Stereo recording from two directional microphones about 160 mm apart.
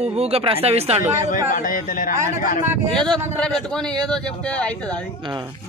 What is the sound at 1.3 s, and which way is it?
Speech, 55° left (ahead or behind).